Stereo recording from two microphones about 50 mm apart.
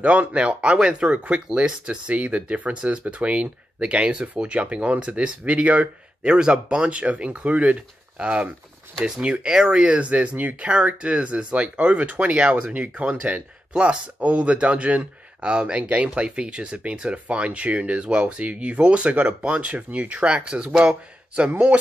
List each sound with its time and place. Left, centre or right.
0.0 s speech: right